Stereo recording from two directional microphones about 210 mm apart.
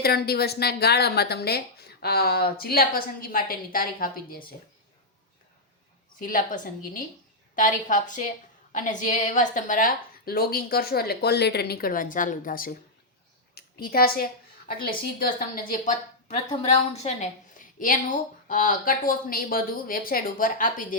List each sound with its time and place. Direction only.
0.0 s speech: 45° left (ahead or behind)
6.1 s a woman's voice: 40° left (ahead or behind)
16.5 s a woman's voice: 30° left (ahead or behind)